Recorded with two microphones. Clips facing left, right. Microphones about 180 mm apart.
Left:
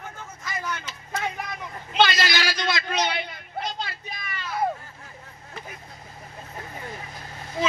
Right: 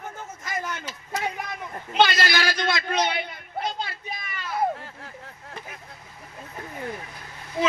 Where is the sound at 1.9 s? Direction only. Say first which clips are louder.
Right 1 dB; 55° right (ahead or behind).